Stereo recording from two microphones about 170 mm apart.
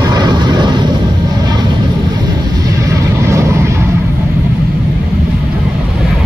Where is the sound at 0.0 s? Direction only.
25° right (ahead or behind).